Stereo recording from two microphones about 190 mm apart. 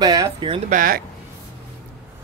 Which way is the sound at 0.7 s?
45° right (ahead or behind).